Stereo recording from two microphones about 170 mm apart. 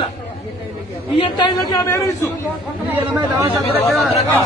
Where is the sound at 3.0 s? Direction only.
20° right (ahead or behind).